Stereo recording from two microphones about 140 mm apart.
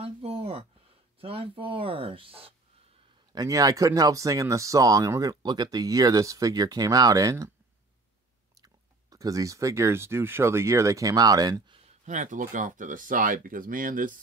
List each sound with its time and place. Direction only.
0.0 s a sound: 45° right (ahead or behind)
1.2 s speech: 40° right (ahead or behind)
3.3 s speech: 25° right (ahead or behind)
8.5 s speech: 25° right (ahead or behind)
12.0 s speech: 60° right (ahead or behind)